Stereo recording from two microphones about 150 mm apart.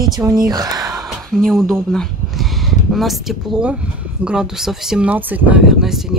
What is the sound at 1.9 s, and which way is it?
Speech, centre (ahead or behind).